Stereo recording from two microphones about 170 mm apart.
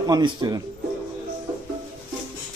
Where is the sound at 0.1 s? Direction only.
25° right (ahead or behind).